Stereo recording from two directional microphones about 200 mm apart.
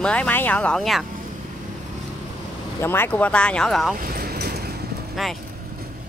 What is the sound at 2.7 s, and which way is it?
Speech, 10° left (ahead or behind).